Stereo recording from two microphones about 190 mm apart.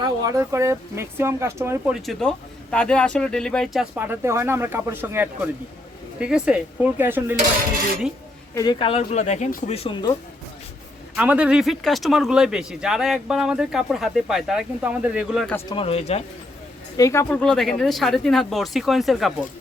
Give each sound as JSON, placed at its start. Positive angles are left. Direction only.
{"t": 0.0, "sound": "speech", "side_deg": -15}
{"t": 1.9, "sound": "speech", "side_deg": 0}
{"t": 8.5, "sound": "speech", "side_deg": 20}
{"t": 9.7, "sound": "speech", "side_deg": 30}
{"t": 11.2, "sound": "speech", "side_deg": -5}
{"t": 15.7, "sound": "speech", "side_deg": 30}
{"t": 17.0, "sound": "speech", "side_deg": 15}
{"t": 17.4, "sound": "speech", "side_deg": 0}